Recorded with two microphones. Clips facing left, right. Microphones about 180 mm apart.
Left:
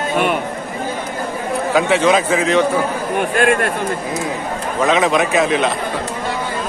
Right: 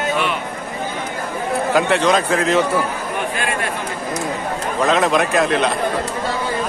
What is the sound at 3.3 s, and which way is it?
Speech, 55° left (ahead or behind).